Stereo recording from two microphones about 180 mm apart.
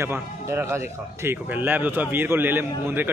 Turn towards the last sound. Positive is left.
turn(degrees=-10)  # may be behind; listen again after turning